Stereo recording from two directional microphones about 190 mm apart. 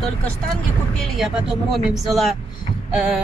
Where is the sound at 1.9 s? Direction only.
Centre (ahead or behind).